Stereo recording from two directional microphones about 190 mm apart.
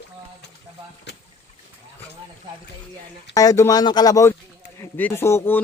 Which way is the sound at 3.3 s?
20° left (ahead or behind).